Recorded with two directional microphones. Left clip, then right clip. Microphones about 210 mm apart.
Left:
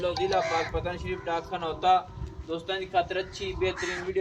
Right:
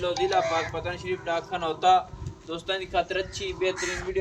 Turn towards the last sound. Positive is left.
turn(degrees=-45)  # may be behind; listen again after turning